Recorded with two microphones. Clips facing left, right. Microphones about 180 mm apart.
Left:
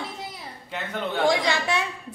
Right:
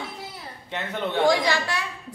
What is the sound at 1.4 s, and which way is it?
Speech, 20° left (ahead or behind).